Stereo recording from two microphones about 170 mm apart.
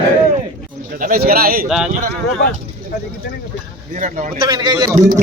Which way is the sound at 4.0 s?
50° right (ahead or behind).